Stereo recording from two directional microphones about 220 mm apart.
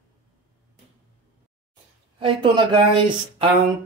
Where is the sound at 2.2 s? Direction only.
20° right (ahead or behind).